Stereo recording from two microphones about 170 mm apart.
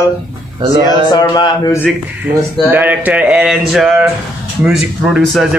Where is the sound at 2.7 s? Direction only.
10° right (ahead or behind).